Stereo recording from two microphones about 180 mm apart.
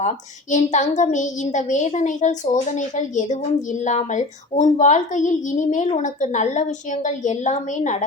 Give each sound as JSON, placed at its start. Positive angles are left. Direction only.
{"t": 0.5, "sound": "a child's voice", "side_deg": 40}